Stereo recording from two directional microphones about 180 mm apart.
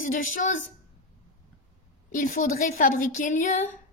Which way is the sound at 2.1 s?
50° left (ahead or behind).